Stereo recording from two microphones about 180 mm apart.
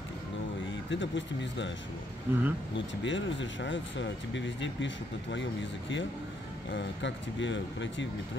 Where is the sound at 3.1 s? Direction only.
90° left.